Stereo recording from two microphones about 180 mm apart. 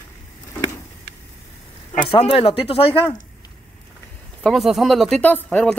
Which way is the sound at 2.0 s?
30° left (ahead or behind).